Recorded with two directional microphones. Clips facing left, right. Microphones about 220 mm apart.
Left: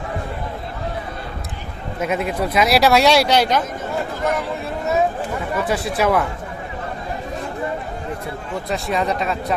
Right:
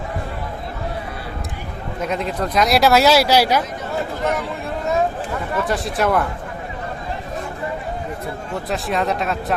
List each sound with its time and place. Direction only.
2.0 s speech: 5° left (ahead or behind)
5.6 s speech: centre (ahead or behind)
8.7 s speech: centre (ahead or behind)